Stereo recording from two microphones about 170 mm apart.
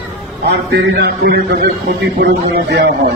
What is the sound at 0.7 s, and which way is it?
A man's voice, 75° right (ahead or behind).